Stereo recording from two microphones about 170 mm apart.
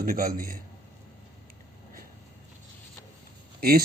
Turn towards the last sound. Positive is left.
turn(degrees=-65)  # may be behind; listen again after turning